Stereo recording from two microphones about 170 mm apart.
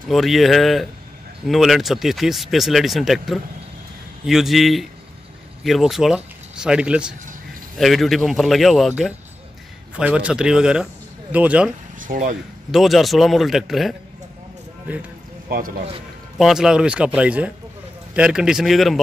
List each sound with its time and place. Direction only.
0.1 s speech: centre (ahead or behind)
12.0 s speech: 50° right (ahead or behind)
12.7 s speech: centre (ahead or behind)
16.3 s speech: centre (ahead or behind)